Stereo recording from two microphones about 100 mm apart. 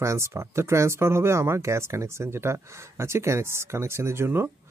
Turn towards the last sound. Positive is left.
turn(degrees=-25)  # may be behind; listen again after turning